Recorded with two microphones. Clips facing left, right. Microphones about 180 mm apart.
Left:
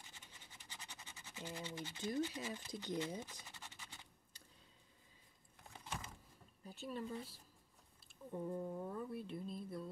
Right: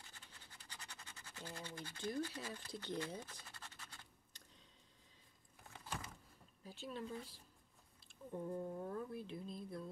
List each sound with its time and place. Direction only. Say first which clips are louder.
0.0 s scratch: left 1 dB; 20° left (ahead or behind)
6.6 s speech: left 2 dB; 5° left (ahead or behind)